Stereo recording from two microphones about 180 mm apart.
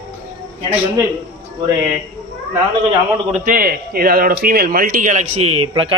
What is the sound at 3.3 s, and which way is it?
Speech, 50° right (ahead or behind).